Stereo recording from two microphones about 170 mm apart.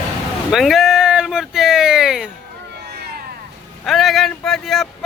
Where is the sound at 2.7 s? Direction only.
75° right (ahead or behind).